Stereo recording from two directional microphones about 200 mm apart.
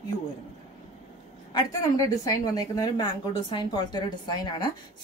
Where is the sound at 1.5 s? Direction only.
15° left (ahead or behind).